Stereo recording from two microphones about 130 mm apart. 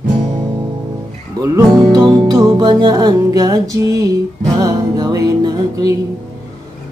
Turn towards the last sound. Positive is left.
turn(degrees=-30)  # may be behind; listen again after turning